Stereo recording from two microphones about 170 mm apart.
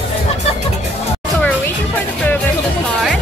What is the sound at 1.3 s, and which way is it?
Music, 10° left (ahead or behind).